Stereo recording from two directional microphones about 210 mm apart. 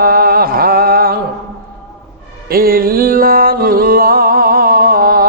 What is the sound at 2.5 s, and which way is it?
Music, 45° right (ahead or behind).